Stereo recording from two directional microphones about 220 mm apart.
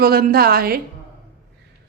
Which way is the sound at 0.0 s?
45° right (ahead or behind).